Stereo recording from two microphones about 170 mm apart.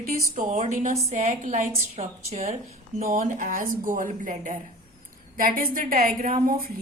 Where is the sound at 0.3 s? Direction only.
45° right (ahead or behind).